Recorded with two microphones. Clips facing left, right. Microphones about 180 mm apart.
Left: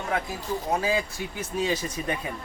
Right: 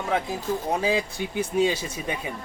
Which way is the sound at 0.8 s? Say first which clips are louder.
Right 2 dB; 20° right (ahead or behind).